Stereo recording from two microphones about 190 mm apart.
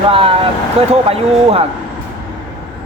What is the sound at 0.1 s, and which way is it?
A man's voice, 30° right (ahead or behind).